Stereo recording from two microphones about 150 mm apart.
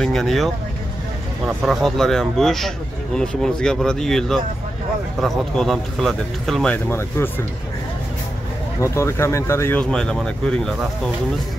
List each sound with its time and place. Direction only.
0.0 s speech: centre (ahead or behind)
1.6 s speech: centre (ahead or behind)
6.9 s speech: 15° left (ahead or behind)
8.8 s speech: 20° left (ahead or behind); by 10.9 s centre (ahead or behind)